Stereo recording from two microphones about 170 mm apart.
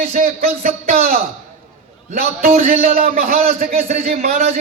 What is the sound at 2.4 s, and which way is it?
A man's voice, 55° right (ahead or behind).